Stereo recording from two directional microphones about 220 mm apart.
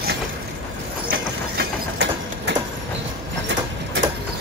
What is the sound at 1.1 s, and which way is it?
Train, 55° right (ahead or behind).